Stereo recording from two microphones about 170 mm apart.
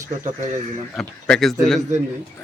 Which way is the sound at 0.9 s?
Centre (ahead or behind).